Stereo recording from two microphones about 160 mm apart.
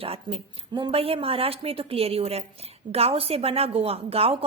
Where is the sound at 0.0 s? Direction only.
35° right (ahead or behind).